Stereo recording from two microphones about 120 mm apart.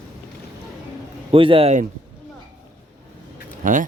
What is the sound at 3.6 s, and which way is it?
Speech, 90° right.